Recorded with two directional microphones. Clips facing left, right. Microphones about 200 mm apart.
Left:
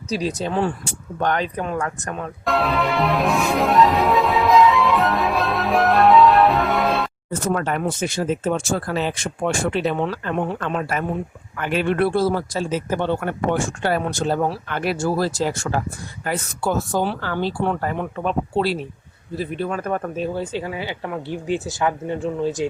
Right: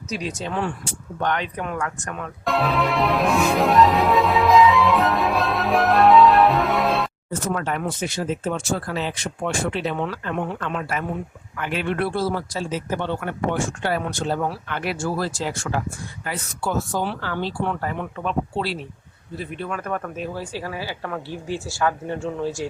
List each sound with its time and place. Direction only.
0.1 s speech: 35° left (ahead or behind)
2.4 s music: centre (ahead or behind)
7.4 s speech: 45° left (ahead or behind)
10.0 s speech: 35° left (ahead or behind); by 22.7 s 20° left (ahead or behind)